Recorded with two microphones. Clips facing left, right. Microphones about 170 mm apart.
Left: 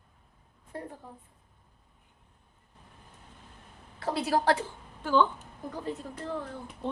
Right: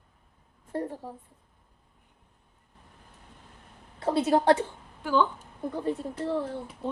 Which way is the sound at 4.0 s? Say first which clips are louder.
Right 5 dB; 25° right (ahead or behind).